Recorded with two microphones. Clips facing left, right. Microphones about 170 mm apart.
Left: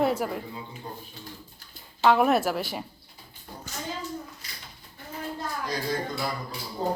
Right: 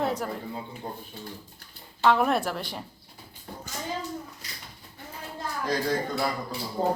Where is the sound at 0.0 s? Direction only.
10° left (ahead or behind).